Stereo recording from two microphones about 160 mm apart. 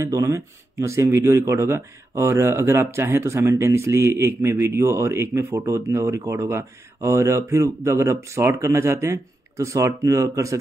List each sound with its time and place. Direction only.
0.0 s speech: 20° right (ahead or behind)